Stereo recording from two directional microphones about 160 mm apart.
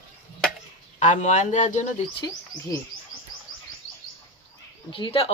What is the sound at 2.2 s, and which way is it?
Speech, 20° left (ahead or behind).